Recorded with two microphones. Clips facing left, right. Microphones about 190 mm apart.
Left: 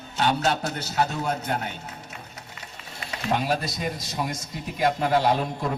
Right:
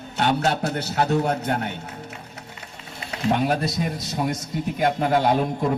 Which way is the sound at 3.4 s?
60° right (ahead or behind).